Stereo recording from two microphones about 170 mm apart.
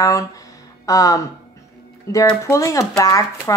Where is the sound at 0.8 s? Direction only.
20° left (ahead or behind).